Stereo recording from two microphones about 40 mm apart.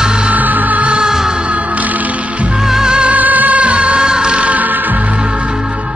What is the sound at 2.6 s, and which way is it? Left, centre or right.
Music, centre.